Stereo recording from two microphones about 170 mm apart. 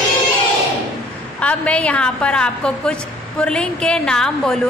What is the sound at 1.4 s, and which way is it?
A woman's voice, 5° left (ahead or behind).